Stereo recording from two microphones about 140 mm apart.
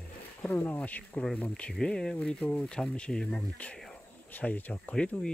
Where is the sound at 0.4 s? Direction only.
15° left (ahead or behind).